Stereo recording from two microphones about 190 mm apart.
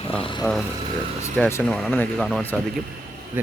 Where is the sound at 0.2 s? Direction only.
25° left (ahead or behind).